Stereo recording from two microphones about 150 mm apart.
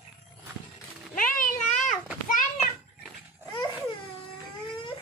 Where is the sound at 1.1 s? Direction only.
65° left (ahead or behind).